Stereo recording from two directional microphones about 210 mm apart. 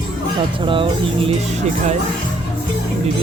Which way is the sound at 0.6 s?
25° right (ahead or behind).